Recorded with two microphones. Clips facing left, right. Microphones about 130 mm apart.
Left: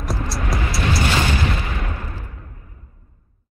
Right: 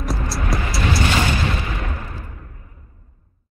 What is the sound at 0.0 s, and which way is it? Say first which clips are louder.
Music: right 1 dB; centre (ahead or behind).